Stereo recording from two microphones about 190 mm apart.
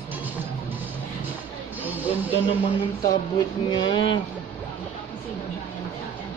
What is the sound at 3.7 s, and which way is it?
Speech, 25° left (ahead or behind).